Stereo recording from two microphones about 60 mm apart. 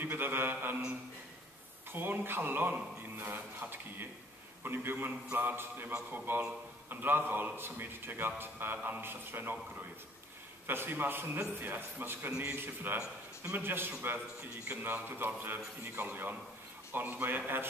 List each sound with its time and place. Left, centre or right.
0.0 s a man's voice: right
1.9 s a man's voice: right
12.3 s a man's voice: right
12.5 s a man's voice: right